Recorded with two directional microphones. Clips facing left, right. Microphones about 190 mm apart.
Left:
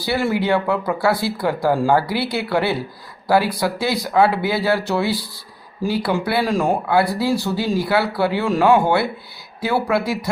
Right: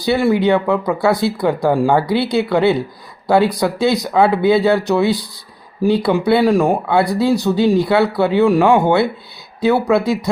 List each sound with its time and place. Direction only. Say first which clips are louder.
0.0 s speech: right 6 dB; 20° right (ahead or behind)